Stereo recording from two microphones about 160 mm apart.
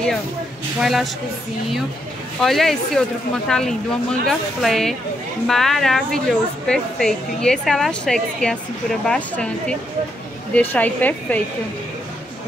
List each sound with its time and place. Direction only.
0.7 s a woman's voice: centre (ahead or behind)
2.4 s a woman's voice: centre (ahead or behind)